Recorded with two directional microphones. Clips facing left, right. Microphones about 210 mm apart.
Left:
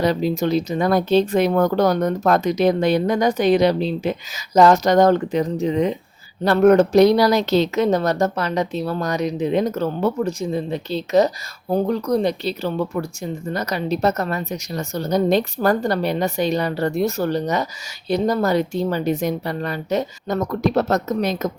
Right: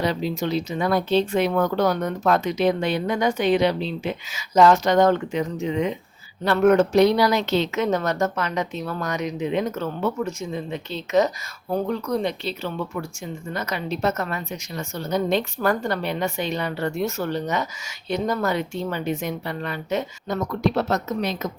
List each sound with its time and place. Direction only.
0.0 s speech: 45° left (ahead or behind)